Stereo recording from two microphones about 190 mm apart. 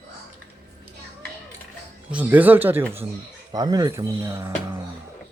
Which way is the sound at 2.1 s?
10° right (ahead or behind).